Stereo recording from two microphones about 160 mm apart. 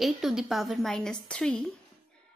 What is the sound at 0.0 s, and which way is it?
A woman's voice, centre (ahead or behind).